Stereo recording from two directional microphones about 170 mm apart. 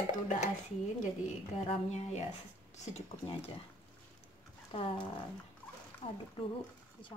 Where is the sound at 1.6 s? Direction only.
40° left (ahead or behind).